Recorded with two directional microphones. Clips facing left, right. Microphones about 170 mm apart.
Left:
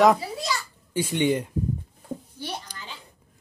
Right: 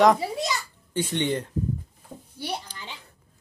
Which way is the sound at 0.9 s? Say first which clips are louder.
Left 3 dB; 10° left (ahead or behind).